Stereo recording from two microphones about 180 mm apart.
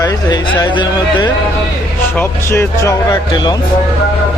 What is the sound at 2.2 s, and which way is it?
Speech, 15° left (ahead or behind).